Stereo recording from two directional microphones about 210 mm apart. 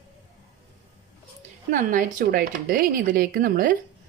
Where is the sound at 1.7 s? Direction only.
40° right (ahead or behind).